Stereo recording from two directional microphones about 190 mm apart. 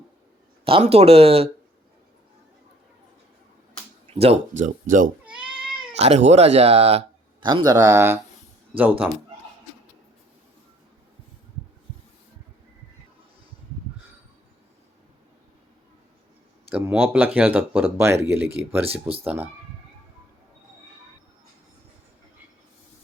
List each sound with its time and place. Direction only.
0.6 s speech: 30° right (ahead or behind)
4.0 s a sound: 30° right (ahead or behind)
4.6 s speech: 45° right (ahead or behind)
7.4 s speech: 20° right (ahead or behind)
16.7 s speech: 10° right (ahead or behind)